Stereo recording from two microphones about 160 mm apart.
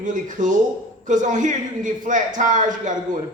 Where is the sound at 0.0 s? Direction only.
55° right (ahead or behind).